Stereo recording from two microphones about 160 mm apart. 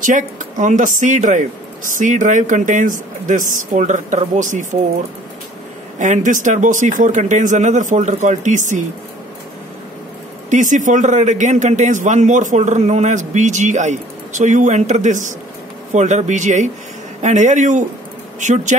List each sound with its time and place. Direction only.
0.0 s a man's voice: 55° right (ahead or behind)
5.9 s a man's voice: 50° right (ahead or behind)
10.5 s a man's voice: 50° right (ahead or behind)